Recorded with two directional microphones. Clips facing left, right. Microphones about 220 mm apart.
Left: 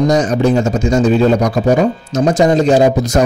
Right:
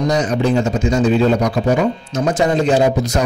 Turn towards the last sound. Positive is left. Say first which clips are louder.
# left 4 dB
turn(degrees=45)  # may be behind; listen again after turning